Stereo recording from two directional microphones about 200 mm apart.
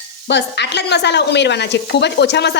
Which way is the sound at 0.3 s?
60° left (ahead or behind).